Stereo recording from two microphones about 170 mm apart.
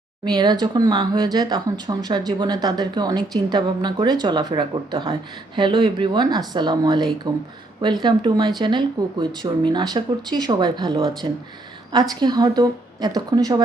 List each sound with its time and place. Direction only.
0.3 s a woman's voice: 25° right (ahead or behind)